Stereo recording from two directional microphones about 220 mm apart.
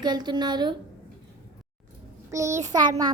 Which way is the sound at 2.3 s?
15° right (ahead or behind).